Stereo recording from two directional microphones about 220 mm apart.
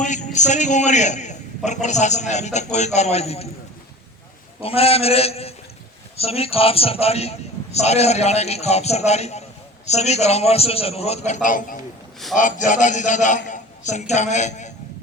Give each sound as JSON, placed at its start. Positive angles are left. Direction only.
{"t": 0.0, "sound": "a man's voice", "side_deg": 35}
{"t": 4.6, "sound": "a man's voice", "side_deg": 25}